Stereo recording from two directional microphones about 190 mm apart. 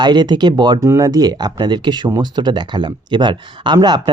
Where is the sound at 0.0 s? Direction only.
25° right (ahead or behind).